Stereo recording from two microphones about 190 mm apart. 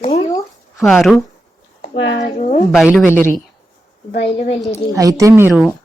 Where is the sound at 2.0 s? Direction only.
75° left (ahead or behind).